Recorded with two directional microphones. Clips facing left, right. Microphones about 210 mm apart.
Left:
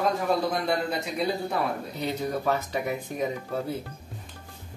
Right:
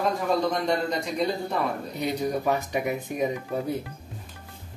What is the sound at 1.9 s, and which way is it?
Speech, 15° right (ahead or behind).